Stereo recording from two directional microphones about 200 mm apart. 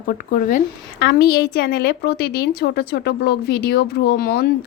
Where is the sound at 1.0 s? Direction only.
55° left (ahead or behind).